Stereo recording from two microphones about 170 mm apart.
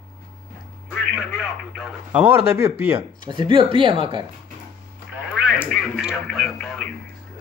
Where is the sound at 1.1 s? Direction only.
5° right (ahead or behind).